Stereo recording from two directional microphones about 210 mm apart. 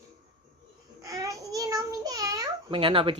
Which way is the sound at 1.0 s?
15° right (ahead or behind).